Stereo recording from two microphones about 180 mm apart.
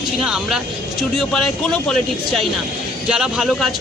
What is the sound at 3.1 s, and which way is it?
Speech, 5° right (ahead or behind).